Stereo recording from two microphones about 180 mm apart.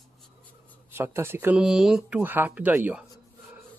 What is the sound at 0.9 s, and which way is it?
Speech, 15° right (ahead or behind).